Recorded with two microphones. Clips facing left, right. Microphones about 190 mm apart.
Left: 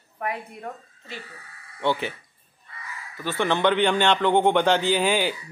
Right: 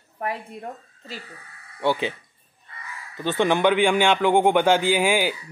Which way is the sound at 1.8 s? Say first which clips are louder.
Right 2 dB; 15° right (ahead or behind).